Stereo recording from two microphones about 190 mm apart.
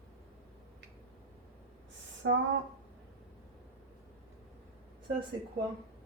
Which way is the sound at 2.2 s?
80° right.